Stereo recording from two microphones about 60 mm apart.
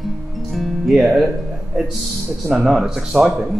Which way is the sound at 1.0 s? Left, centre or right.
Centre.